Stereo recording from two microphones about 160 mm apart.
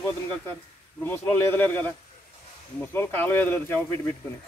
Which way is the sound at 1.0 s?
10° left (ahead or behind).